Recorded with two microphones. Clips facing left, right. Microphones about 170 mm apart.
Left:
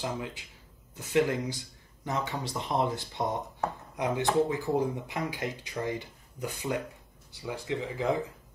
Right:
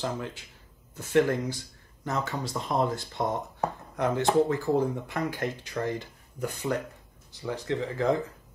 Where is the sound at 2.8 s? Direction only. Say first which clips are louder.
Right 3 dB; 20° left (ahead or behind).